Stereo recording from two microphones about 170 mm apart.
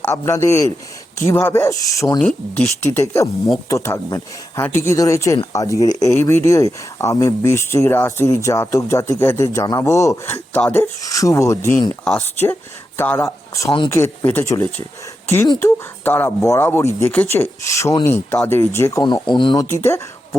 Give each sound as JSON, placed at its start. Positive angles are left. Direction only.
{"t": 0.0, "sound": "speech", "side_deg": 15}
{"t": 2.1, "sound": "speech", "side_deg": 5}
{"t": 2.6, "sound": "speech", "side_deg": 15}
{"t": 13.0, "sound": "speech", "side_deg": 15}
{"t": 13.7, "sound": "speech", "side_deg": 30}
{"t": 13.9, "sound": "speech", "side_deg": 15}
{"t": 19.6, "sound": "speech", "side_deg": 15}